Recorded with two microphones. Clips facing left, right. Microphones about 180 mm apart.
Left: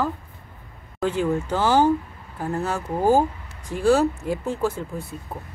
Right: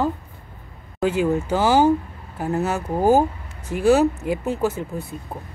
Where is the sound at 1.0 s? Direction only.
5° right (ahead or behind).